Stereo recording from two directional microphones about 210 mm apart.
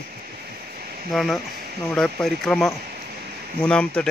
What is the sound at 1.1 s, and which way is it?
Speech, centre (ahead or behind).